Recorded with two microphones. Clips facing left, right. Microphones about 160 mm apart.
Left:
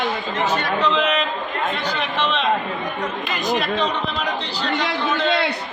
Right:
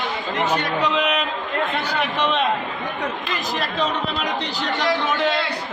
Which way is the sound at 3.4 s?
Centre (ahead or behind).